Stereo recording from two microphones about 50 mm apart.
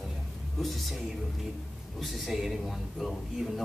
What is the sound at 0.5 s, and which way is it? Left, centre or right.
Speech, centre.